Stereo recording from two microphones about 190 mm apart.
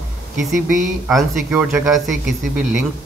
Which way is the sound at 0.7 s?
45° right (ahead or behind).